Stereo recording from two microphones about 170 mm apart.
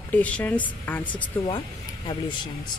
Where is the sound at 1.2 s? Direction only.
25° left (ahead or behind).